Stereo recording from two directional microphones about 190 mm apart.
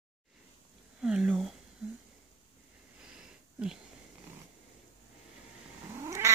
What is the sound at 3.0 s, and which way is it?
Sniff, 5° right (ahead or behind).